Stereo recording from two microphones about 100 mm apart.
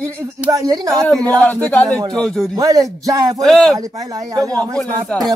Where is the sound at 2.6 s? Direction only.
35° right (ahead or behind).